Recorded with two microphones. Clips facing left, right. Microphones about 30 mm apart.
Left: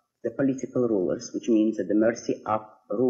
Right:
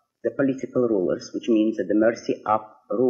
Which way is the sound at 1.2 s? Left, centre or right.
Right.